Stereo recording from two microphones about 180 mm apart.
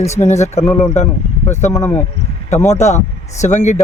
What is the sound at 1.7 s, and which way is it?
Speech, 10° left (ahead or behind).